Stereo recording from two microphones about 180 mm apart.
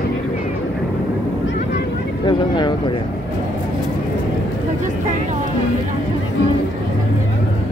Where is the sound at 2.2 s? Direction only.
25° left (ahead or behind).